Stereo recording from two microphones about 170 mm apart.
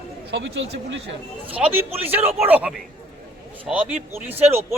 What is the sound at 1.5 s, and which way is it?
A man's voice, 10° right (ahead or behind).